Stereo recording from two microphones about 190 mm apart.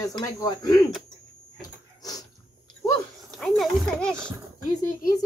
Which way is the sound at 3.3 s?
Centre (ahead or behind).